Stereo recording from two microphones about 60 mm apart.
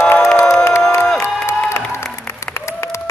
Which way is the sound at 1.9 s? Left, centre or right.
Left.